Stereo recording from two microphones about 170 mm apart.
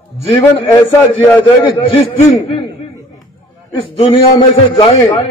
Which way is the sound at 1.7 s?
30° left (ahead or behind).